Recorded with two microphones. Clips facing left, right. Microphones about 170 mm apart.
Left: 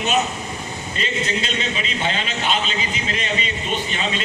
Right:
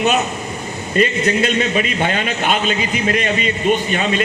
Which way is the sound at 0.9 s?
55° right (ahead or behind).